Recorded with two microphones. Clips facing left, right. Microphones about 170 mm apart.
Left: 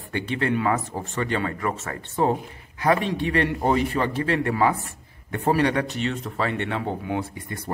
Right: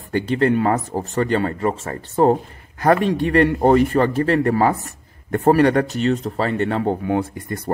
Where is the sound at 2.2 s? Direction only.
50° right (ahead or behind).